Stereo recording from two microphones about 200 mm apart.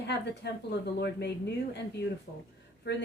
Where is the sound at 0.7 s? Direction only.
55° left (ahead or behind).